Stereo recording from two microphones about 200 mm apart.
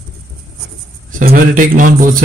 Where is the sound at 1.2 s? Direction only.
45° right (ahead or behind).